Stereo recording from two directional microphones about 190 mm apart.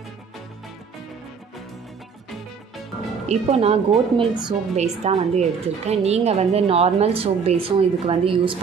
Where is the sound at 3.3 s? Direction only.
35° right (ahead or behind).